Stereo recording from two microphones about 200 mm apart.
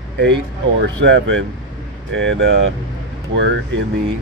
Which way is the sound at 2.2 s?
75° right (ahead or behind).